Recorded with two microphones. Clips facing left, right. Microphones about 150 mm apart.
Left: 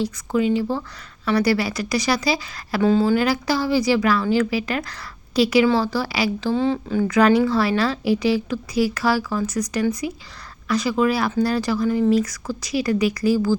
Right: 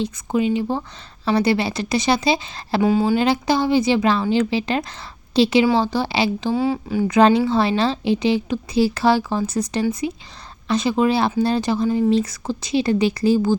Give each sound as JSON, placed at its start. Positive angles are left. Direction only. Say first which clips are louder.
{"t": 0.0, "sound": "a woman's voice", "louder": "even", "side_deg": -20}
{"t": 2.8, "sound": "a woman's voice", "louder": "even", "side_deg": -15}
{"t": 6.5, "sound": "speech", "louder": "even", "side_deg": -10}
{"t": 7.1, "sound": "a woman's voice", "louder": "right 2 dB", "side_deg": -25}